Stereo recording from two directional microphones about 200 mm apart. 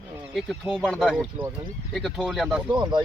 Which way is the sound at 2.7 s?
20° right (ahead or behind).